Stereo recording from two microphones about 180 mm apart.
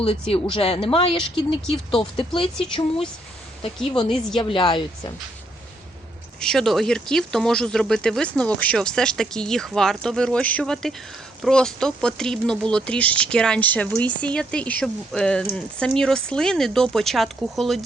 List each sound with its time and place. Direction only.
0.0 s speech: 30° left (ahead or behind)
4.4 s speech: 30° left (ahead or behind)
6.4 s speech: 5° left (ahead or behind)